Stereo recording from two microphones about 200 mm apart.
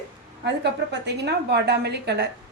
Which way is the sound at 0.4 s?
60° right (ahead or behind).